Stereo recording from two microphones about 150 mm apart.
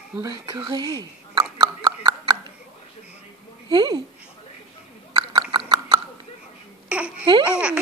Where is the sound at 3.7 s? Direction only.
30° right (ahead or behind).